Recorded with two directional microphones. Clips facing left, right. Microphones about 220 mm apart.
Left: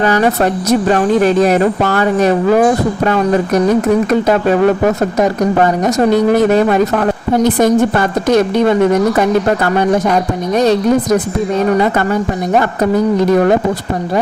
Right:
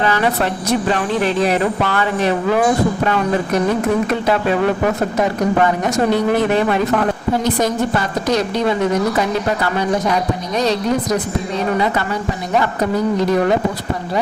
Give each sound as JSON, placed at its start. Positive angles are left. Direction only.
{"t": 0.0, "sound": "speech", "side_deg": 45}
{"t": 4.3, "sound": "speech", "side_deg": 45}
{"t": 7.4, "sound": "speech", "side_deg": 55}